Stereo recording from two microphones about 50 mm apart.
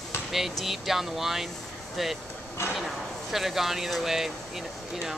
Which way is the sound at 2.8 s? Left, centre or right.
Centre.